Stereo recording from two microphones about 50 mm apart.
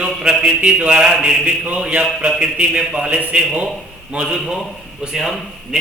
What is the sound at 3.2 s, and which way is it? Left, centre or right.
Speech, right.